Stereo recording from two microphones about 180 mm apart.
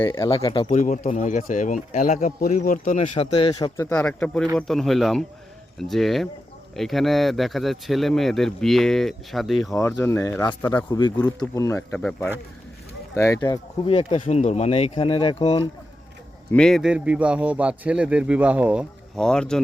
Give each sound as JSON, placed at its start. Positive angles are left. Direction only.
{"t": 0.0, "sound": "speech", "side_deg": 15}
{"t": 0.4, "sound": "speech", "side_deg": 25}
{"t": 0.7, "sound": "speech", "side_deg": 45}
{"t": 3.2, "sound": "speech", "side_deg": 30}
{"t": 3.5, "sound": "speech", "side_deg": 20}
{"t": 3.8, "sound": "speech", "side_deg": 5}
{"t": 9.7, "sound": "speech", "side_deg": 15}
{"t": 13.1, "sound": "speech", "side_deg": 20}
{"t": 13.8, "sound": "speech", "side_deg": 35}
{"t": 16.5, "sound": "a man's voice", "side_deg": 5}
{"t": 19.1, "sound": "speech", "side_deg": 5}